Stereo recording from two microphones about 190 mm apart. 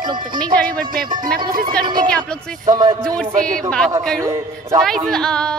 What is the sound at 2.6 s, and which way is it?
Speech, 20° right (ahead or behind).